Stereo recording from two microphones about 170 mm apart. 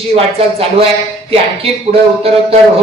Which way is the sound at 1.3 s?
35° right (ahead or behind).